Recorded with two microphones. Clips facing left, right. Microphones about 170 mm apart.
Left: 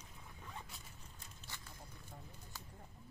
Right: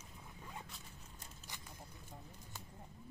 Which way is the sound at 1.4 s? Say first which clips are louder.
Even; 15° right (ahead or behind).